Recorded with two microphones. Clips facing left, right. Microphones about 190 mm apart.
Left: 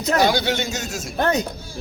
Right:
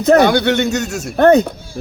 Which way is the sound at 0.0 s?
60° right (ahead or behind).